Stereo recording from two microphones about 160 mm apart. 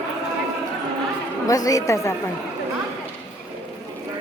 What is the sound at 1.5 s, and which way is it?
Speech, 20° left (ahead or behind).